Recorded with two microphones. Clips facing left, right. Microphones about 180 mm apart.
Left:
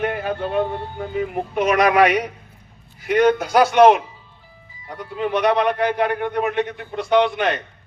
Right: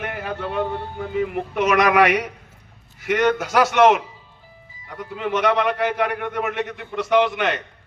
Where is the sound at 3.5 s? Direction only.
35° left (ahead or behind).